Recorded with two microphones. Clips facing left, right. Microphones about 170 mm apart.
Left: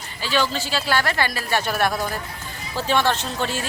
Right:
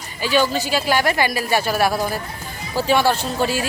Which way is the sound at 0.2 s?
15° right (ahead or behind).